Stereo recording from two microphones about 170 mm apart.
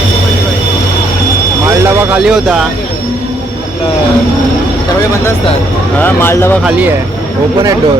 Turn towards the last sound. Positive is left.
turn(degrees=15)  # may be behind; listen again after turning